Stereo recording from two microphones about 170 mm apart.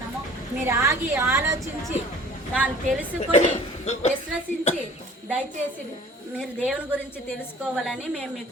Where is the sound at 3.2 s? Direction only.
40° left (ahead or behind).